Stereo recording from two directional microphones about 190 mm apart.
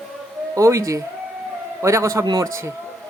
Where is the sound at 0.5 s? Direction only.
15° right (ahead or behind).